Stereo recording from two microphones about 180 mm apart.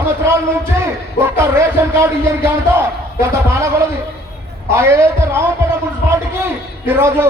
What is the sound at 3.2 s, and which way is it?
A man's voice, 15° right (ahead or behind).